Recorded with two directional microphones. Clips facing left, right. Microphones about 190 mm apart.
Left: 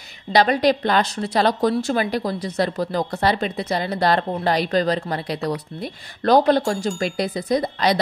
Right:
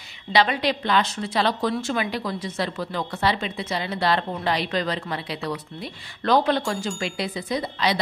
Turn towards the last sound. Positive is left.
turn(degrees=40)  # may be behind; listen again after turning